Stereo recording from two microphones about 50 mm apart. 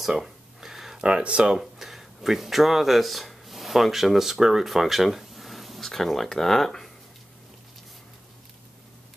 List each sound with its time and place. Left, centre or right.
0.0 s a sound: centre
1.0 s speech: right
1.6 s speech: centre